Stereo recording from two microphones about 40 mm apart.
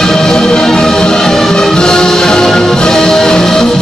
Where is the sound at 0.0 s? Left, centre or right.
Centre.